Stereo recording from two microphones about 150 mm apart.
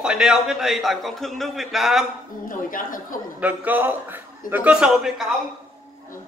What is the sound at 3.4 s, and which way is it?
Speech, 10° right (ahead or behind).